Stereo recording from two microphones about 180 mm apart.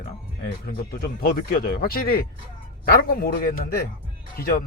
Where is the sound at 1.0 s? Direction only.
55° left (ahead or behind).